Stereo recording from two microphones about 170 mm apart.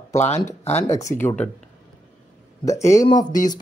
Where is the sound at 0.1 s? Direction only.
40° left (ahead or behind).